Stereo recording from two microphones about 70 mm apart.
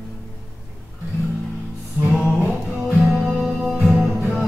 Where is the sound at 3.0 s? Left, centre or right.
Centre.